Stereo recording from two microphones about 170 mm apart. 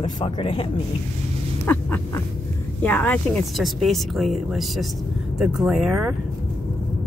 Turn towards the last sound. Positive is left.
turn(degrees=-5)  # may be behind; listen again after turning